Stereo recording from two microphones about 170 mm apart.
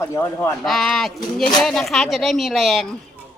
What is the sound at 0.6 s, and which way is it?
Speech, centre (ahead or behind).